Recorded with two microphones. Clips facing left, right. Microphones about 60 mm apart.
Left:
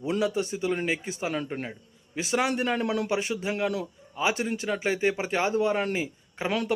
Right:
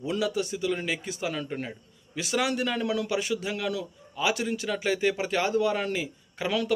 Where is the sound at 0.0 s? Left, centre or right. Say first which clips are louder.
Left 1 dB; left.